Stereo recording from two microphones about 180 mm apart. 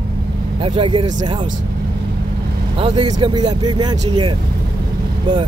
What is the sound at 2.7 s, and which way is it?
Speech, 30° right (ahead or behind).